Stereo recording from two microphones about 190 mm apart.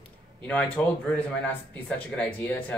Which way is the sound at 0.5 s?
10° left (ahead or behind).